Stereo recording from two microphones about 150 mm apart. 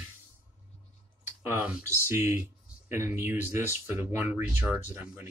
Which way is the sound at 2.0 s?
15° right (ahead or behind).